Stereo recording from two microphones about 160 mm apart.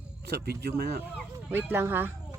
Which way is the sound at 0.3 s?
80° right.